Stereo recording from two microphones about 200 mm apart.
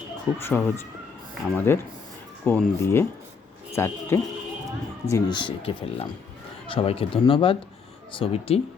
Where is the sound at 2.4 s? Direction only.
10° left (ahead or behind); by 8.6 s 30° left (ahead or behind).